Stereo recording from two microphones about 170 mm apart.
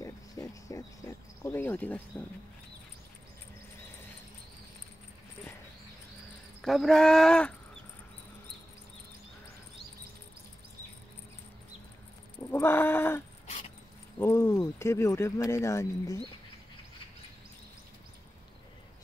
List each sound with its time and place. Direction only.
0.0 s cricket: 20° left (ahead or behind)
6.6 s speech: centre (ahead or behind)
12.4 s a sound: 15° left (ahead or behind)
14.2 s speech: 15° left (ahead or behind)